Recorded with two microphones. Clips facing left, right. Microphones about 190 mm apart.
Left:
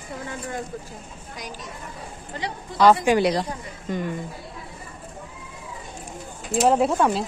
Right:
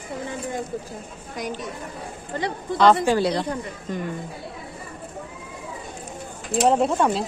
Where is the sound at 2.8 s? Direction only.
10° left (ahead or behind).